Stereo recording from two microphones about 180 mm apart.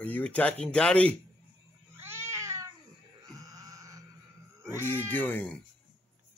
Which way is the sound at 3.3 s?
20° right (ahead or behind).